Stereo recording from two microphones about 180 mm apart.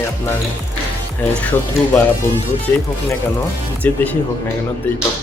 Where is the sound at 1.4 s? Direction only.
10° left (ahead or behind).